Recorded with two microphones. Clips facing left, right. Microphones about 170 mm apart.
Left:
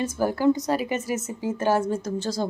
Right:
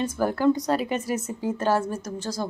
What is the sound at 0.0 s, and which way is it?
Speech, 5° left (ahead or behind).